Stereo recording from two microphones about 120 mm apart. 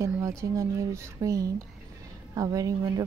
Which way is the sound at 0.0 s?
25° right (ahead or behind).